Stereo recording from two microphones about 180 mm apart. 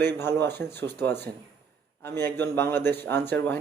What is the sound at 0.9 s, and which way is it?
A man's voice, 10° left (ahead or behind).